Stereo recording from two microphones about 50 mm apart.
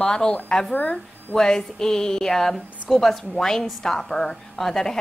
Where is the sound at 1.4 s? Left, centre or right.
Centre.